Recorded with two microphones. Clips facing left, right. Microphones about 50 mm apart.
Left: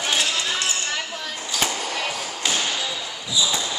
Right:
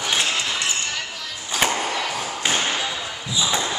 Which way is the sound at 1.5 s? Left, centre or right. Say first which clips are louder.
Right 4 dB; right.